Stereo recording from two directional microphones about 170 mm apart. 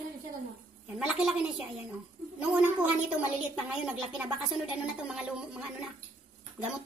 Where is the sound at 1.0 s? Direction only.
5° right (ahead or behind).